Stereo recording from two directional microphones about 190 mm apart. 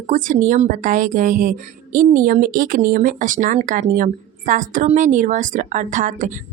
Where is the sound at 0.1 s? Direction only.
45° right (ahead or behind).